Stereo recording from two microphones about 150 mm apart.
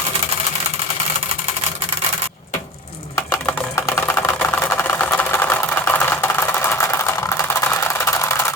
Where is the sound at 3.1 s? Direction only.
20° left (ahead or behind).